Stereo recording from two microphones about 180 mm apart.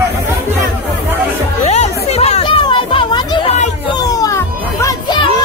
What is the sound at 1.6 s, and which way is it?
Chatter, 35° left (ahead or behind).